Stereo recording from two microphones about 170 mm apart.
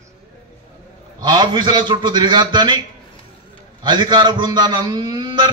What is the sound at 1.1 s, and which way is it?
A man's voice, 25° right (ahead or behind).